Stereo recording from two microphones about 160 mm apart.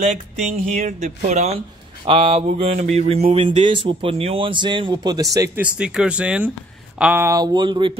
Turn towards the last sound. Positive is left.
turn(degrees=-30)  # may be behind; listen again after turning